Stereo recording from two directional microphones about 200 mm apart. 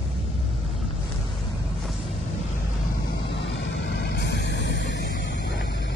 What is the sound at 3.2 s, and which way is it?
Vehicle, 60° left (ahead or behind).